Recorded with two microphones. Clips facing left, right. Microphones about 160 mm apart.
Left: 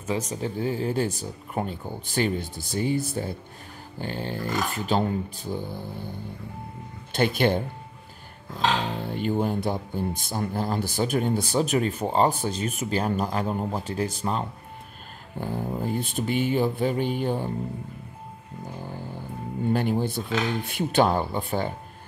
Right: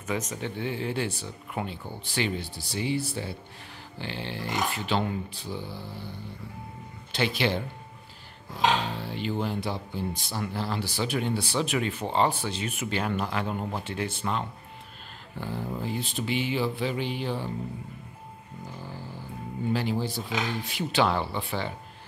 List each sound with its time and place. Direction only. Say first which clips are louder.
0.0 s speech: left 3 dB; 30° left (ahead or behind); by 7.6 s 50° left (ahead or behind)
8.9 s speech: left 5 dB; 50° left (ahead or behind)
19.7 s speech: left 4 dB; 50° left (ahead or behind)